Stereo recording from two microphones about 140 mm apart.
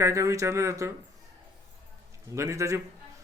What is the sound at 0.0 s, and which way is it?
Speech, 20° right (ahead or behind).